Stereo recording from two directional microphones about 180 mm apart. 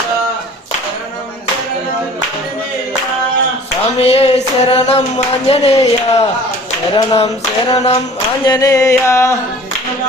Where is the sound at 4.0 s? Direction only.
35° left (ahead or behind).